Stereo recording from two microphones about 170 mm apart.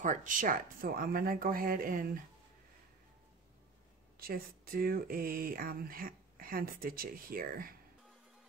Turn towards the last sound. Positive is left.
turn(degrees=-55)  # may be behind; listen again after turning